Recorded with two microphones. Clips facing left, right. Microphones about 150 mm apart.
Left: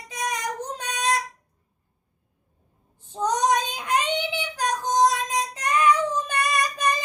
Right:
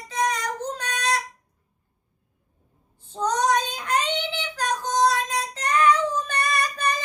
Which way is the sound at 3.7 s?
15° left (ahead or behind).